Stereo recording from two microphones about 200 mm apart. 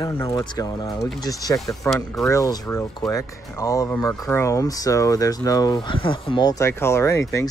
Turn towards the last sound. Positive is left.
turn(degrees=15)  # may be behind; listen again after turning